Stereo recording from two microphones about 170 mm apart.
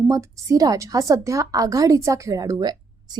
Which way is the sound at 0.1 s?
20° right (ahead or behind).